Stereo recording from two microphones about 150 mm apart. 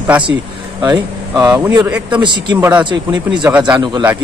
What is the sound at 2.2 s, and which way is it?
Speech, 30° right (ahead or behind).